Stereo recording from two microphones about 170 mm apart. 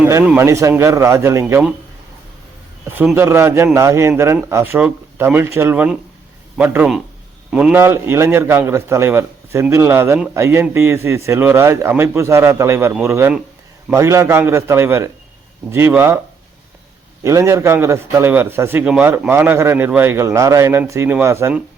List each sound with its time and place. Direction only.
0.0 s a man's voice: 15° right (ahead or behind)
2.9 s a man's voice: 10° right (ahead or behind)
17.2 s a man's voice: 15° right (ahead or behind)